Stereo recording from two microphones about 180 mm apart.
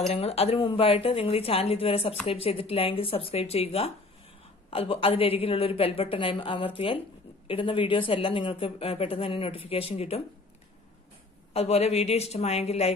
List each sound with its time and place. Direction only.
0.0 s speech: 35° left (ahead or behind)
11.5 s speech: 35° left (ahead or behind)